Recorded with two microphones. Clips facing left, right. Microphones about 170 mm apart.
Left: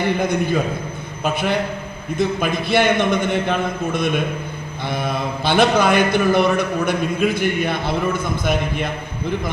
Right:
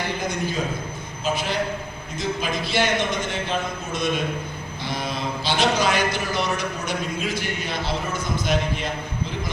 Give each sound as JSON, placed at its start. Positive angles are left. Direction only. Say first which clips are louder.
{"t": 0.2, "sound": "a man's voice", "louder": "left 7 dB", "side_deg": 60}